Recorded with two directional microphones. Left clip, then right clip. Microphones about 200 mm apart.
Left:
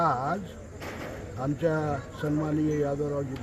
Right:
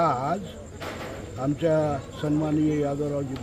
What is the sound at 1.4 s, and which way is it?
Speech, 15° right (ahead or behind).